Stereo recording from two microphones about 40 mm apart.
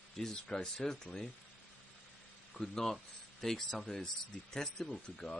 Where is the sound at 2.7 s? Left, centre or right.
Centre.